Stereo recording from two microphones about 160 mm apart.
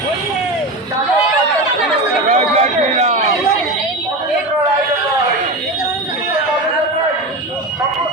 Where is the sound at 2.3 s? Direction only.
40° right (ahead or behind).